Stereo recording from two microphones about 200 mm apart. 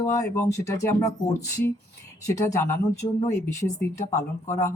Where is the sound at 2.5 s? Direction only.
15° left (ahead or behind).